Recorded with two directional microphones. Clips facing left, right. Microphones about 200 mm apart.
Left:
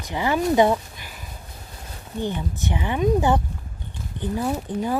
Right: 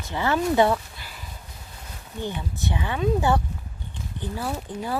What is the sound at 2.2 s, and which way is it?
Speech, 15° left (ahead or behind).